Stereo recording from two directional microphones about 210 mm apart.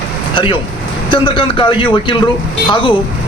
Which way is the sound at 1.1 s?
25° left (ahead or behind).